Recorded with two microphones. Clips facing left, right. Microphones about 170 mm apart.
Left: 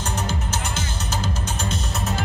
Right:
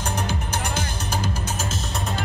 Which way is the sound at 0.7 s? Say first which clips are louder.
Right 1 dB; 10° right (ahead or behind).